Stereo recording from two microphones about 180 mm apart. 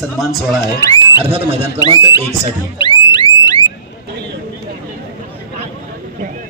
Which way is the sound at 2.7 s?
25° left (ahead or behind).